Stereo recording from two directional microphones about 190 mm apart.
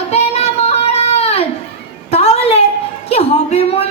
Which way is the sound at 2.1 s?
35° left (ahead or behind).